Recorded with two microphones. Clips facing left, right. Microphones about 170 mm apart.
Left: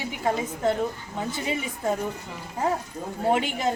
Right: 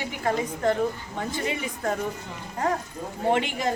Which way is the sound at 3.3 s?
Centre (ahead or behind).